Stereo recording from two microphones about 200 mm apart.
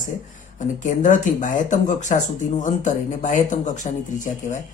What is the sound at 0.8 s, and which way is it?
Speech, 40° left (ahead or behind).